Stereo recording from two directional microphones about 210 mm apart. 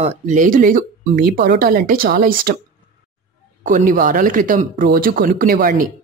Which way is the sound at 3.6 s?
40° right (ahead or behind).